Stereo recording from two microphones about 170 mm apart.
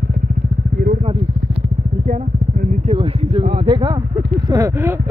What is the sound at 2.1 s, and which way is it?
Speech, 45° right (ahead or behind).